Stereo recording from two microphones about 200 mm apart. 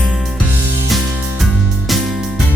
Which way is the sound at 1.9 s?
Centre (ahead or behind).